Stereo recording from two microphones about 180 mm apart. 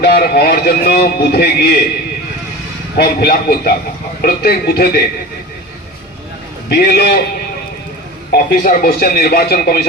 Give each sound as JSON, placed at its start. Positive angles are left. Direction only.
{"t": 0.0, "sound": "a man's voice", "side_deg": 60}
{"t": 3.0, "sound": "a man's voice", "side_deg": 60}
{"t": 6.7, "sound": "a man's voice", "side_deg": 60}
{"t": 8.3, "sound": "a man's voice", "side_deg": 55}